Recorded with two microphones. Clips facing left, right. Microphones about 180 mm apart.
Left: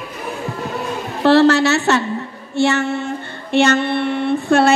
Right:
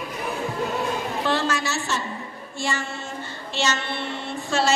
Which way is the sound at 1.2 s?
70° left (ahead or behind).